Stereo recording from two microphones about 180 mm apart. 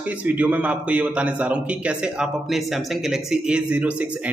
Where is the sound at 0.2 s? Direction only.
10° right (ahead or behind).